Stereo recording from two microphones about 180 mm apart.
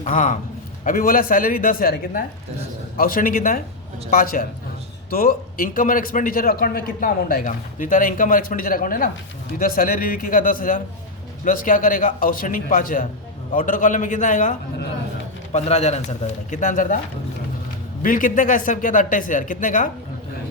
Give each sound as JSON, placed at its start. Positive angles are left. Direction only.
{"t": 0.0, "sound": "a man's voice", "side_deg": 45}
{"t": 15.5, "sound": "a man's voice", "side_deg": 40}
{"t": 18.0, "sound": "a man's voice", "side_deg": 50}